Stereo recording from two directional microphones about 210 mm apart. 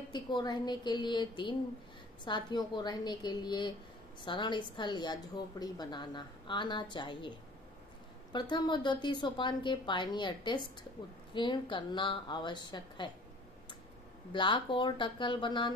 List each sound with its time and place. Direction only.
0.1 s a woman's voice: 20° left (ahead or behind)
14.3 s a woman's voice: 20° left (ahead or behind)